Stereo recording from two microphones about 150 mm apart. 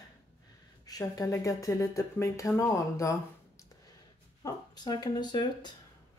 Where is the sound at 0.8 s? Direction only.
25° left (ahead or behind).